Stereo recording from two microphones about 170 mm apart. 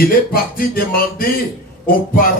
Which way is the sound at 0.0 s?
60° left (ahead or behind).